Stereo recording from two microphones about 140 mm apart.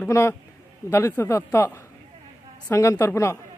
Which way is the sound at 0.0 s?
20° left (ahead or behind).